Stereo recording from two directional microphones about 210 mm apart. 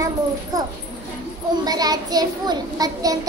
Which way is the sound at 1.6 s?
20° right (ahead or behind).